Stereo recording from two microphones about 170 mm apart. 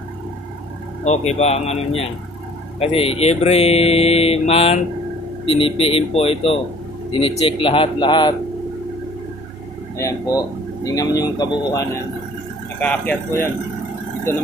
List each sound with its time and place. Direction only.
1.0 s speech: 40° left (ahead or behind)
9.9 s speech: 20° left (ahead or behind)
12.8 s speech: 10° left (ahead or behind)